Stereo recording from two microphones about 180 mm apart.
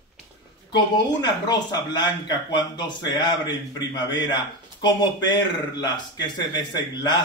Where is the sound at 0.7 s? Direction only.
25° left (ahead or behind).